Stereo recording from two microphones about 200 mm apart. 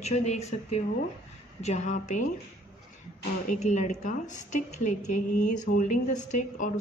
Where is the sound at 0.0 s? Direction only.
35° left (ahead or behind).